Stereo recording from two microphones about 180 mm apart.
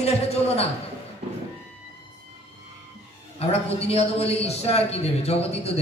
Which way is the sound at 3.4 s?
35° left (ahead or behind).